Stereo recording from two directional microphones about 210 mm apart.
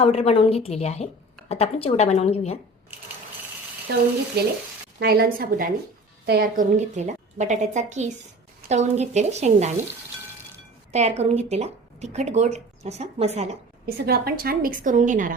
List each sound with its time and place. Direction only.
0.0 s a woman's voice: 30° left (ahead or behind)
4.4 s a woman's voice: 50° right (ahead or behind); by 9.7 s 35° right (ahead or behind)
10.9 s speech: 30° right (ahead or behind)
13.8 s speech: 45° right (ahead or behind)